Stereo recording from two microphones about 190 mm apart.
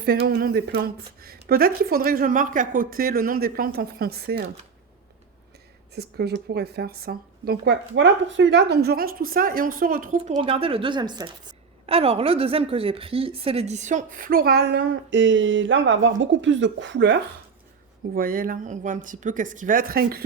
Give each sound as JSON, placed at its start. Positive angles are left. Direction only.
{"t": 0.3, "sound": "speech", "side_deg": -55}
{"t": 5.9, "sound": "speech", "side_deg": -60}
{"t": 18.1, "sound": "speech", "side_deg": -50}